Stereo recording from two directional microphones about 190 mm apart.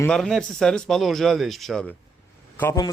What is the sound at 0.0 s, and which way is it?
A man's voice, 5° left (ahead or behind).